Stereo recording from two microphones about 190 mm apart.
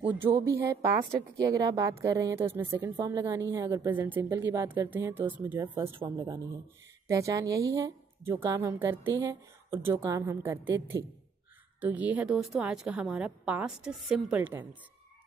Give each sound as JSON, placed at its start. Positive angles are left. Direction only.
{"t": 0.0, "sound": "a woman's voice", "side_deg": -10}